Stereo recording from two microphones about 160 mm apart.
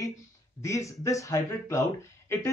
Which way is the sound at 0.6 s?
20° left (ahead or behind).